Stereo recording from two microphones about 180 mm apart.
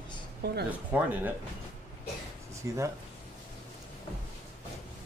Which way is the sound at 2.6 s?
15° right (ahead or behind).